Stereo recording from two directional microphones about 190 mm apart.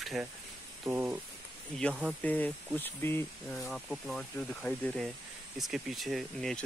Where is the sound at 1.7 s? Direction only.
5° left (ahead or behind).